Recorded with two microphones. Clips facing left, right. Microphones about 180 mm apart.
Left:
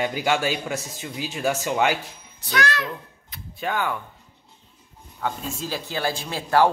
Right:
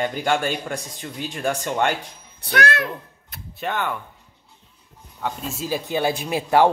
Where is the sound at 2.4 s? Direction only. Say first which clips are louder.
Right 3 dB; 55° right (ahead or behind).